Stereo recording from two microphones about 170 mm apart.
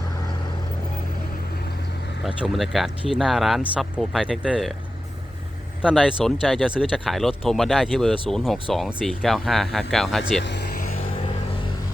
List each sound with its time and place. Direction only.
2.2 s speech: centre (ahead or behind)
5.8 s speech: 5° right (ahead or behind)
10.4 s speech: 80° left
10.8 s music: 50° left (ahead or behind)